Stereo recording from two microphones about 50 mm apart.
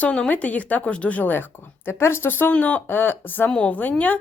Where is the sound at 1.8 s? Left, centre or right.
Left.